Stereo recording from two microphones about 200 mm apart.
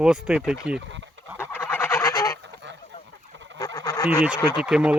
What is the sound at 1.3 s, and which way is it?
Goose, 10° left (ahead or behind).